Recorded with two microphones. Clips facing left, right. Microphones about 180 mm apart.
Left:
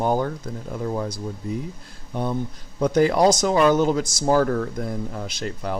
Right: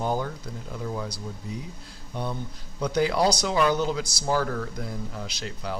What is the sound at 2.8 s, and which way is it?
Speech, 50° left (ahead or behind).